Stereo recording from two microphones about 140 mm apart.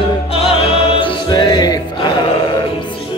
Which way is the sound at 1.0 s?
35° left (ahead or behind).